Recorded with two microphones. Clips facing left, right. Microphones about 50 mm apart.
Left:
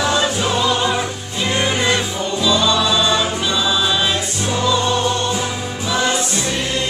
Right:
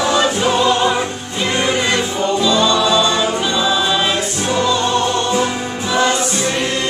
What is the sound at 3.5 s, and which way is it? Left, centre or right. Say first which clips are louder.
Music: right 2 dB; centre.